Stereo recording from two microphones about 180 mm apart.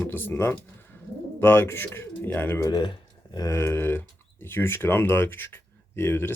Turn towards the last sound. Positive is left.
turn(degrees=10)  # may be behind; listen again after turning